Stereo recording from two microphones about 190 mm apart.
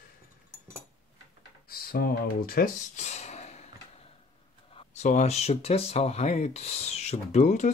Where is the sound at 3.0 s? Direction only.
35° left (ahead or behind).